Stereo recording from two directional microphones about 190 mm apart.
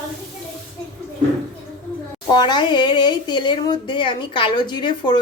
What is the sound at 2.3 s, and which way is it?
Speech, 25° left (ahead or behind).